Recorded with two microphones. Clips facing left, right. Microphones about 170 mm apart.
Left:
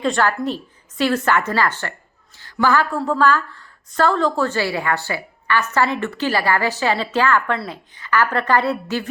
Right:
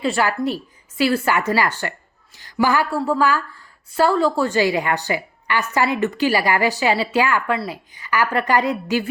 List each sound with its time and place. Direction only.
0.0 s a woman's voice: 10° right (ahead or behind)